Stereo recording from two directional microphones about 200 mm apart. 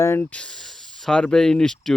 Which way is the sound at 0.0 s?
10° left (ahead or behind).